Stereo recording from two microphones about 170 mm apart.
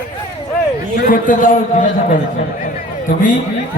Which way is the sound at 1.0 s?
50° left (ahead or behind).